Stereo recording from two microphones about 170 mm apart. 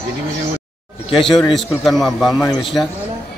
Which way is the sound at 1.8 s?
Centre (ahead or behind).